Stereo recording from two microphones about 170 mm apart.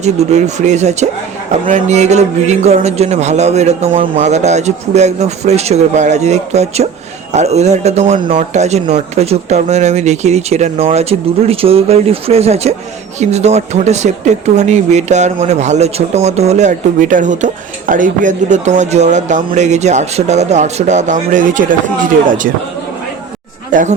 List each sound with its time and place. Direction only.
0.0 s a man's voice: 40° right (ahead or behind)
23.7 s speech: 50° right (ahead or behind)